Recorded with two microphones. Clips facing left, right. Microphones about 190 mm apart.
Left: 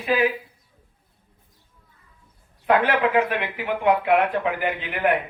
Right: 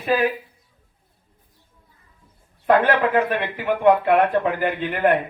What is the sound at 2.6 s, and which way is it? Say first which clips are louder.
Speech: right 2 dB; 45° right (ahead or behind).